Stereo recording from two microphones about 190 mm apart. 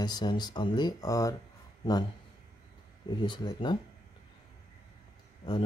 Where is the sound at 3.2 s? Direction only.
25° left (ahead or behind).